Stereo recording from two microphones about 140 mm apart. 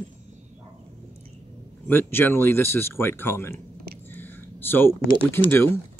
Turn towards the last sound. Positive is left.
turn(degrees=15)  # may be behind; listen again after turning